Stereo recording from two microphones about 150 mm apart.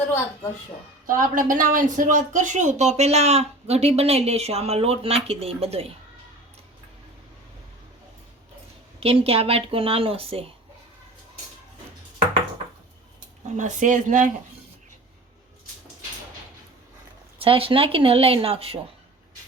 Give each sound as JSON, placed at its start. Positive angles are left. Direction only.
{"t": 1.0, "sound": "speech", "side_deg": -65}
{"t": 9.0, "sound": "speech", "side_deg": -40}
{"t": 13.6, "sound": "speech", "side_deg": -55}
{"t": 17.4, "sound": "speech", "side_deg": -35}